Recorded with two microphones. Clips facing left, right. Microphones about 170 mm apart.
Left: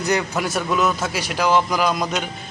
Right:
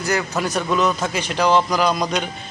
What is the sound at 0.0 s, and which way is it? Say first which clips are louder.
A man's voice: even; 15° left (ahead or behind).